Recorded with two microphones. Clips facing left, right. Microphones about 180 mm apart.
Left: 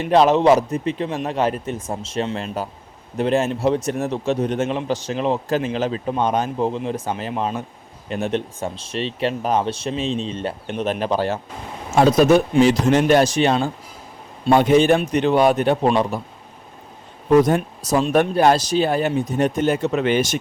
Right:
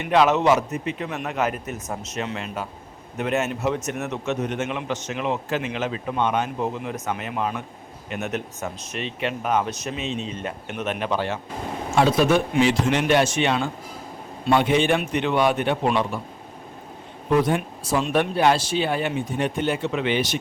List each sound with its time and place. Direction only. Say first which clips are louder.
0.0 s a man's voice: left 4 dB; 35° left (ahead or behind)
17.3 s speech: left 6 dB; 40° left (ahead or behind)